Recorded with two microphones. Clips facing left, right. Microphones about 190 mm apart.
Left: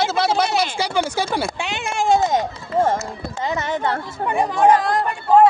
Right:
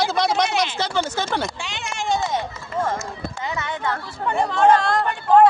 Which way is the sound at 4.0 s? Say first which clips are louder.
Left 2 dB; 15° left (ahead or behind).